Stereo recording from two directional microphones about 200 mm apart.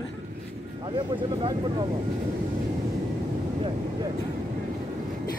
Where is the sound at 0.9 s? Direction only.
25° right (ahead or behind).